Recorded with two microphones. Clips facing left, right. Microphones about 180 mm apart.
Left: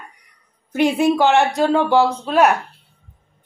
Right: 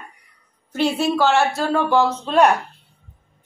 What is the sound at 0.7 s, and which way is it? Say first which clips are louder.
A woman's voice: left 3 dB; 15° left (ahead or behind).